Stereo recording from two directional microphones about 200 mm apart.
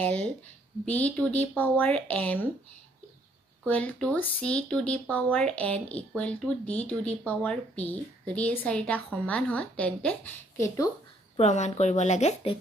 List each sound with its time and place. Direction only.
0.0 s speech: 5° left (ahead or behind)
3.6 s speech: 10° left (ahead or behind)
11.3 s speech: 35° left (ahead or behind)